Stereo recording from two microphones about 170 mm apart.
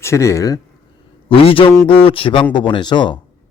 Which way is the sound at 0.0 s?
15° left (ahead or behind).